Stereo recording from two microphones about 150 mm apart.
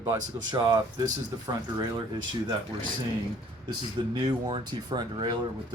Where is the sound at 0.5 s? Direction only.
25° right (ahead or behind).